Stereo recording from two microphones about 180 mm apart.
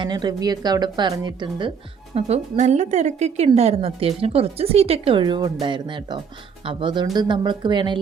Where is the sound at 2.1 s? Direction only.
40° right (ahead or behind).